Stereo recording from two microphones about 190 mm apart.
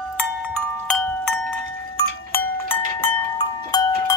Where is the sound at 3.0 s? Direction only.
20° left (ahead or behind).